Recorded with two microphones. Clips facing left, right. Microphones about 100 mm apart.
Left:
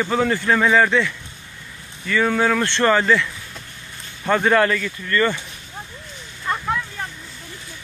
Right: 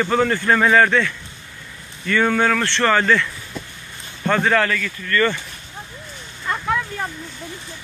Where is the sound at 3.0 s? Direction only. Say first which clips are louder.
Even; 5° left (ahead or behind).